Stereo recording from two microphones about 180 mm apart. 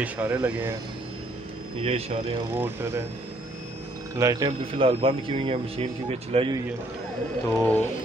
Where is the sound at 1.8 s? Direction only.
35° right (ahead or behind).